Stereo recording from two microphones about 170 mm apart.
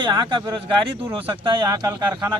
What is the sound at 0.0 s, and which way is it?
A man's voice, 25° right (ahead or behind).